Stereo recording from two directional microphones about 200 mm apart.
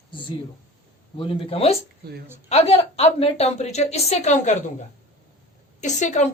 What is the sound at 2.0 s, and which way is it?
Speech, 50° right (ahead or behind).